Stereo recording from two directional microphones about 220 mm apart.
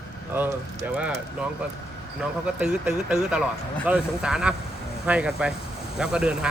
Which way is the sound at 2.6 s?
5° right (ahead or behind).